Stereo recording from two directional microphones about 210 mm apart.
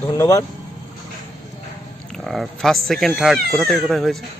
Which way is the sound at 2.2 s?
Centre (ahead or behind).